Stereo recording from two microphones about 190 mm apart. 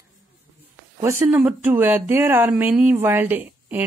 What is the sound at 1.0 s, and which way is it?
Speech, 15° right (ahead or behind).